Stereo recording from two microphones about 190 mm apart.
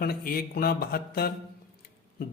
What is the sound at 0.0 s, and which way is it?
Mantra, 50° left (ahead or behind).